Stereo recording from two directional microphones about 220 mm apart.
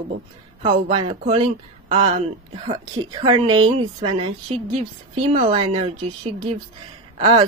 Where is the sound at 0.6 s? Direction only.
25° right (ahead or behind).